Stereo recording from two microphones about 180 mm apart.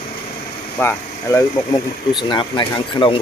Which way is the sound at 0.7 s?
15° left (ahead or behind).